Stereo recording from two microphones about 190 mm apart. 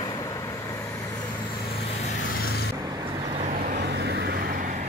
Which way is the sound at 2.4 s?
55° left (ahead or behind).